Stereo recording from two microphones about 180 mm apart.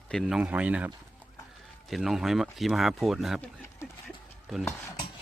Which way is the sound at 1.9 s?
Centre (ahead or behind).